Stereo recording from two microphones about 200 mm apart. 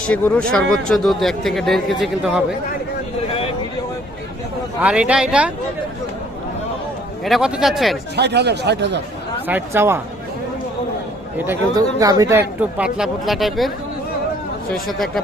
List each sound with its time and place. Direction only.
0.5 s speech: 5° left (ahead or behind)
4.8 s speech: 5° right (ahead or behind)
7.3 s speech: centre (ahead or behind)
8.1 s speech: 55° right (ahead or behind)
9.5 s speech: 10° right (ahead or behind)
11.3 s speech: 15° right (ahead or behind)
14.7 s speech: centre (ahead or behind)